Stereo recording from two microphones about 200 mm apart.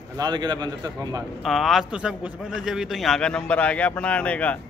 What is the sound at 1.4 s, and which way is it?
A man's voice, centre (ahead or behind).